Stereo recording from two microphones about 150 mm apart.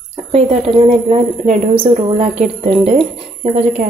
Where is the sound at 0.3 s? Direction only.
45° right (ahead or behind).